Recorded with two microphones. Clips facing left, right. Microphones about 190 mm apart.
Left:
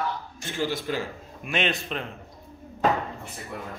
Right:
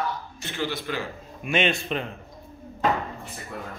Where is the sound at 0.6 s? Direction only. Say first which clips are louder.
Left 2 dB; 45° left (ahead or behind).